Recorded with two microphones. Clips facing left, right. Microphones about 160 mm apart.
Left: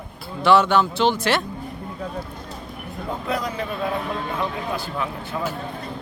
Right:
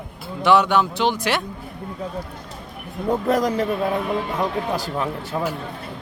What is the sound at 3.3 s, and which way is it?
Speech, 45° right (ahead or behind).